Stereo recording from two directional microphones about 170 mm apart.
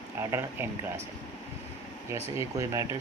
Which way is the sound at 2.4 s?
20° right (ahead or behind).